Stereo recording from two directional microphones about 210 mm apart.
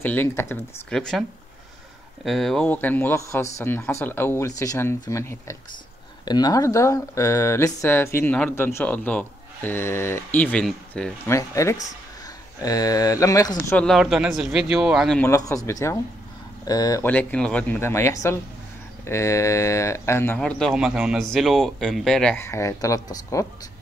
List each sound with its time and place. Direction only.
0.0 s speech: 10° left (ahead or behind)
2.2 s speech: centre (ahead or behind)
11.2 s speech: 15° left (ahead or behind)
13.7 s speech: centre (ahead or behind)
15.2 s speech: 15° left (ahead or behind)